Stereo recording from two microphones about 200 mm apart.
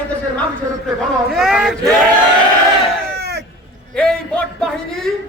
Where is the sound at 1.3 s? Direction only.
Centre (ahead or behind).